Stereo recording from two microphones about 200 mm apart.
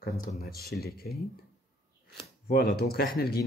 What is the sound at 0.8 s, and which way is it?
Speech, 50° left (ahead or behind).